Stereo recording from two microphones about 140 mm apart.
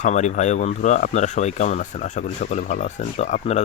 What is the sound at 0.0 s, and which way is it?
Speech, 60° left (ahead or behind).